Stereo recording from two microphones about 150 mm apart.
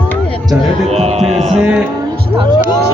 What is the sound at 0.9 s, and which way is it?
Speech, 45° right (ahead or behind).